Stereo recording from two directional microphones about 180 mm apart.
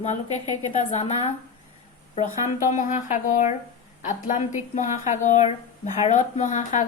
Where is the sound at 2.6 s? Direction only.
40° left (ahead or behind).